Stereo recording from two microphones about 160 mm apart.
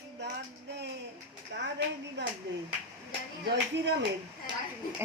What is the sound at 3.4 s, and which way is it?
Speech, 90° right.